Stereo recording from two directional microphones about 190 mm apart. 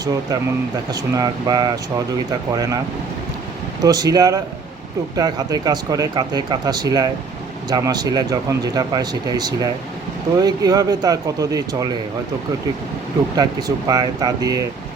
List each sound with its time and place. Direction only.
0.0 s speech: 20° right (ahead or behind)
3.8 s speech: 20° right (ahead or behind)
13.3 s speech: 20° right (ahead or behind)